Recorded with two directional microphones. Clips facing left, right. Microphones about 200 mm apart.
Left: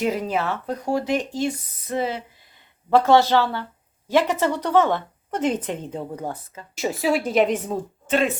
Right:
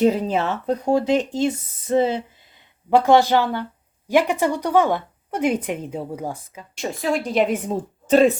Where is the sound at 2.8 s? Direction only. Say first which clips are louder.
Right 1 dB; 15° right (ahead or behind).